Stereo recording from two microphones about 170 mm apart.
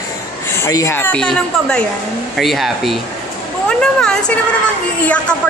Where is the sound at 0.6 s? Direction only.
15° left (ahead or behind).